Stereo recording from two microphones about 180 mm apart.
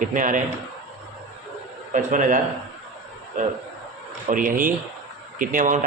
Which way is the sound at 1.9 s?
45° right (ahead or behind).